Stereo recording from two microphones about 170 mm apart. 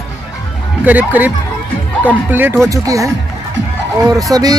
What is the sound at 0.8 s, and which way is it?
Speech, 10° right (ahead or behind).